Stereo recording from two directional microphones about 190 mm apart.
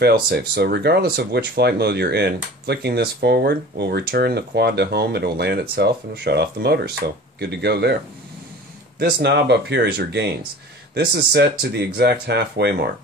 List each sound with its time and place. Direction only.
0.0 s speech: 55° right (ahead or behind)
9.0 s speech: 60° right (ahead or behind)